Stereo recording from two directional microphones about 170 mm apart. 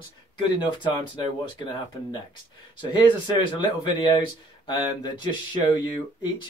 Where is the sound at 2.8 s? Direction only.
30° left (ahead or behind).